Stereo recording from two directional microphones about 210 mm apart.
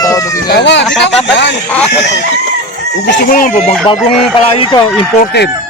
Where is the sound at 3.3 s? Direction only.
40° left (ahead or behind).